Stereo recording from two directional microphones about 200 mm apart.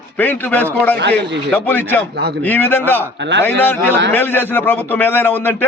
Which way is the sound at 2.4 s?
10° left (ahead or behind).